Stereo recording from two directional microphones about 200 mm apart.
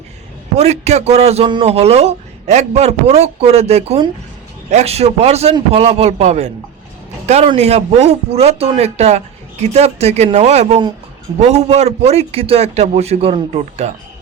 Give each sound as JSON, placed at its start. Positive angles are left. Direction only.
{"t": 0.5, "sound": "a man's voice", "side_deg": -35}